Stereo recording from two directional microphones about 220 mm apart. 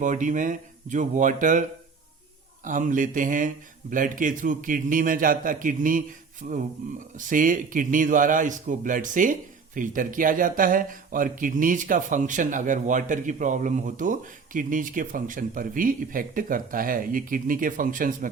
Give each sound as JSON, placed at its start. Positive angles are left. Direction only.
{"t": 0.0, "sound": "speech", "side_deg": -35}
{"t": 2.6, "sound": "speech", "side_deg": -35}